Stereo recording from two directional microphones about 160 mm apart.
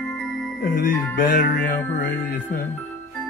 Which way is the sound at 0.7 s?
60° left (ahead or behind).